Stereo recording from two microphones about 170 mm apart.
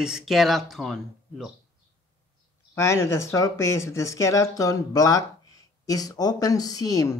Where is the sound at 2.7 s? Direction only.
15° left (ahead or behind).